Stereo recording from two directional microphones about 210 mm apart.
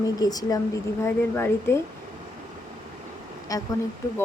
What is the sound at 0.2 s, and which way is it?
Speech, 15° left (ahead or behind).